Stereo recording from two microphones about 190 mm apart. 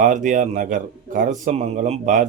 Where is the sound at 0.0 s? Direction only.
45° right (ahead or behind).